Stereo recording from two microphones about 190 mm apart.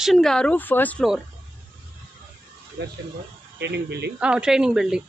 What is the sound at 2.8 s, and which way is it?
Speech, 60° right (ahead or behind).